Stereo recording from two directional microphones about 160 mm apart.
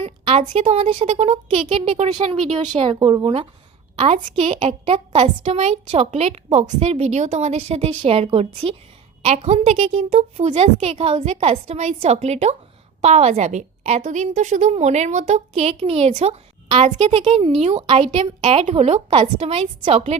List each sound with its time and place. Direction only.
0.0 s a woman's voice: 40° right (ahead or behind)